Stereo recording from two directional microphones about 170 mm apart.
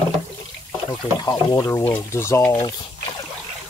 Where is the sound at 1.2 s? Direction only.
20° left (ahead or behind).